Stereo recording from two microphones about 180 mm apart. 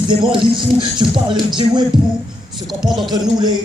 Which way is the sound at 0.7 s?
25° right (ahead or behind).